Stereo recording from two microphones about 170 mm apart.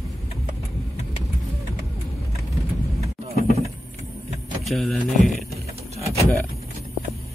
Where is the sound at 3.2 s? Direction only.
40° right (ahead or behind).